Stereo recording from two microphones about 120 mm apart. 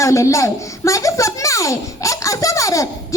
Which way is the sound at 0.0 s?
25° left (ahead or behind).